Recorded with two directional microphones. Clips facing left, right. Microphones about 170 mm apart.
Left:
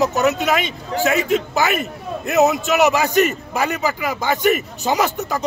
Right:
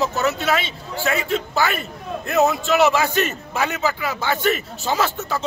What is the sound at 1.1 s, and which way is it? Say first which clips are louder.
Speech: left 4 dB; centre (ahead or behind).